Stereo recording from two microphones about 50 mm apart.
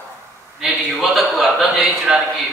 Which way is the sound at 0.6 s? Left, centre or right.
Centre.